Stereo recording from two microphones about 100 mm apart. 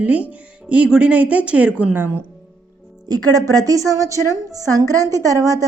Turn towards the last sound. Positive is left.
turn(degrees=-35)  # may be behind; listen again after turning